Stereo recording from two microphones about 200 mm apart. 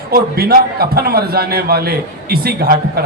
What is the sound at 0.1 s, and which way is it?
A man's voice, 50° right (ahead or behind).